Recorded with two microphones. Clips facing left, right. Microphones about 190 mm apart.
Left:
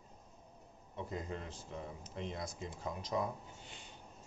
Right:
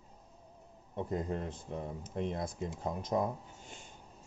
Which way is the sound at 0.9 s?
50° right (ahead or behind).